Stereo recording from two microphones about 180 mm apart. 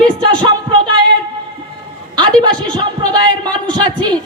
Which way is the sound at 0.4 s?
25° right (ahead or behind).